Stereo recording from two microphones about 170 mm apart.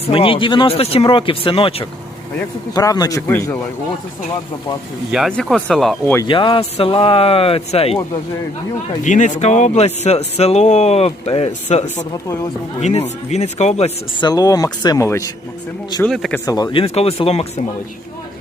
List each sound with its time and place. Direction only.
0.1 s speech: 30° left (ahead or behind); by 3.6 s 15° left (ahead or behind)
5.1 s speech: centre (ahead or behind)
6.2 s speech: 30° left (ahead or behind)
9.0 s speech: 45° left (ahead or behind)
14.2 s speech: 25° left (ahead or behind)
16.0 s speech: centre (ahead or behind)
16.5 s speech: 25° left (ahead or behind)
16.8 s speech: 35° left (ahead or behind)